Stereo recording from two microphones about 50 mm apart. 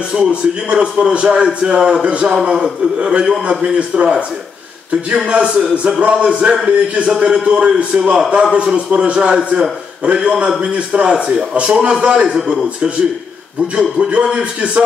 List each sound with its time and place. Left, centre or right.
0.1 s a man's voice: right
12.3 s a man's voice: centre
13.7 s a man's voice: right